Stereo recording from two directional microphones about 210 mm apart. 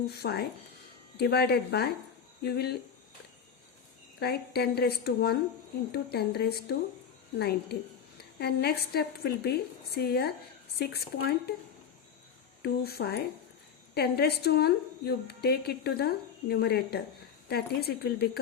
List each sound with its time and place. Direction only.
0.1 s a woman's voice: 50° left (ahead or behind)
4.2 s a woman's voice: 50° left (ahead or behind)
12.6 s a woman's voice: 50° left (ahead or behind)